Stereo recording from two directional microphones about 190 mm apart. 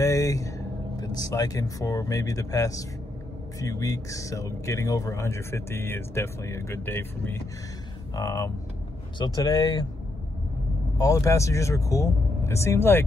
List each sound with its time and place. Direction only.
0.0 s speech: 15° left (ahead or behind)
11.0 s speech: 15° left (ahead or behind)